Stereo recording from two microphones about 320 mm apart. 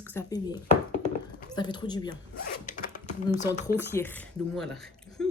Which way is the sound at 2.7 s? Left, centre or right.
Left.